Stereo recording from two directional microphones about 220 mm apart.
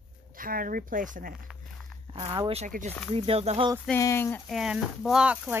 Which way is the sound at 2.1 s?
25° right (ahead or behind).